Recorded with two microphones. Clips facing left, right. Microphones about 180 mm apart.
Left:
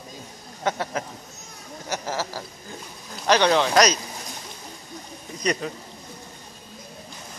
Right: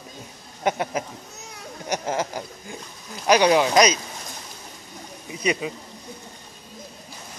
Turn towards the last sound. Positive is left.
turn(degrees=-5)  # may be behind; listen again after turning